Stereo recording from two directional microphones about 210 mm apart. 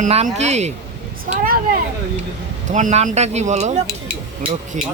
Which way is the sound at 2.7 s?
35° right (ahead or behind).